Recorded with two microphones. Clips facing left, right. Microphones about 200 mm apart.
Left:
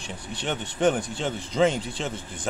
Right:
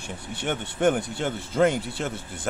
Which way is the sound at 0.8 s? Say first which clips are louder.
Even; 5° right (ahead or behind).